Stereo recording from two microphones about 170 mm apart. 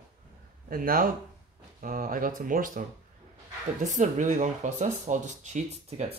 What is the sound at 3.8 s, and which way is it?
Speech, 45° right (ahead or behind).